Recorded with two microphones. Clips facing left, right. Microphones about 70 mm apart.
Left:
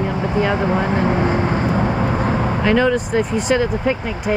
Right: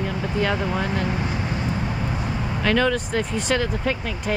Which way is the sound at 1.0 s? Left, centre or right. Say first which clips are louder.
Left 9 dB; left.